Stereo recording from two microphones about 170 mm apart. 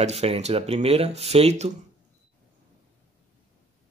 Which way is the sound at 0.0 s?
35° right (ahead or behind).